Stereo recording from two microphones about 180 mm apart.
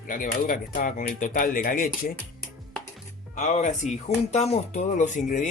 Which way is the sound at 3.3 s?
40° left (ahead or behind).